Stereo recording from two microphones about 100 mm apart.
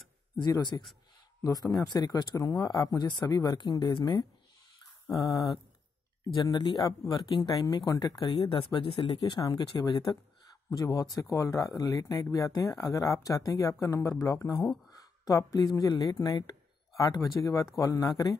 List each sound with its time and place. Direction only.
0.4 s speech: 45° left (ahead or behind)
5.1 s speech: 35° left (ahead or behind)
6.3 s speech: 50° left (ahead or behind)
8.5 s speech: 65° left (ahead or behind); by 18.3 s 35° left (ahead or behind)